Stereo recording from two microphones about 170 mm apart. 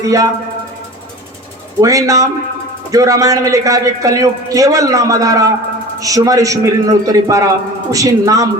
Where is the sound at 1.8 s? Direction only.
20° right (ahead or behind).